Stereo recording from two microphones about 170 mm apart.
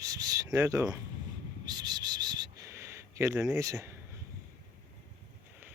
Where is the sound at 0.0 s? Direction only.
20° right (ahead or behind).